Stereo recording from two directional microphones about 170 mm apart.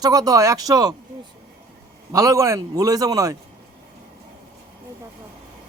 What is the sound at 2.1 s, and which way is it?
A man's voice, 20° right (ahead or behind).